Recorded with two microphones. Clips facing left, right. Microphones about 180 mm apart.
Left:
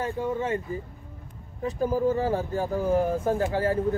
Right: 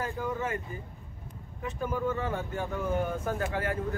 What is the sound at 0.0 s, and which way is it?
Speech, 30° left (ahead or behind).